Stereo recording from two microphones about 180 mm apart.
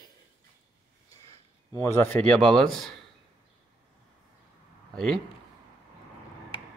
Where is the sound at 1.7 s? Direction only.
15° left (ahead or behind).